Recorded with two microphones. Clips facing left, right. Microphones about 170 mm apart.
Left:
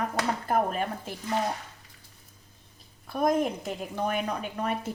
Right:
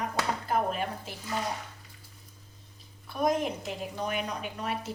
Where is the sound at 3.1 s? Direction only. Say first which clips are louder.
Left 3 dB; 50° left (ahead or behind).